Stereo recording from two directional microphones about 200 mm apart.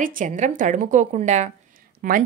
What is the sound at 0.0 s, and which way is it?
A woman's voice, 40° right (ahead or behind).